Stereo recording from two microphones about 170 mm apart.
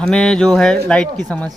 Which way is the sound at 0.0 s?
5° left (ahead or behind).